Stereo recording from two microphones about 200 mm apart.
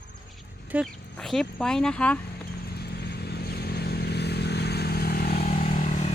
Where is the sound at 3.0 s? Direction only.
55° left (ahead or behind).